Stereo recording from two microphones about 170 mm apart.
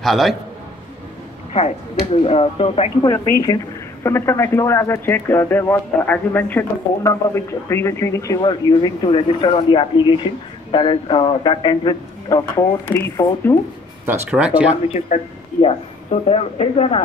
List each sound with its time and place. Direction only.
0.0 s a man's voice: centre (ahead or behind)
2.2 s speech: 35° left (ahead or behind)
3.1 s a man's voice: 20° left (ahead or behind)
14.0 s speech: 10° right (ahead or behind)
14.9 s speech: 45° left (ahead or behind)